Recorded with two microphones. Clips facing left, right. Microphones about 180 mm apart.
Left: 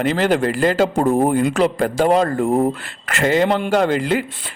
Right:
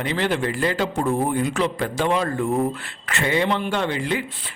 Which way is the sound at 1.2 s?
55° left (ahead or behind).